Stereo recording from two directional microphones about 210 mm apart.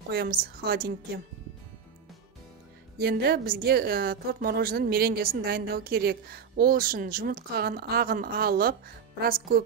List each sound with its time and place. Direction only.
0.1 s a woman's voice: 45° right (ahead or behind)
3.0 s a woman's voice: 50° right (ahead or behind)